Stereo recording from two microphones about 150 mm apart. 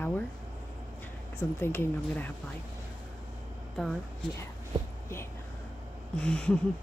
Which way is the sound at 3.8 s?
5° left (ahead or behind).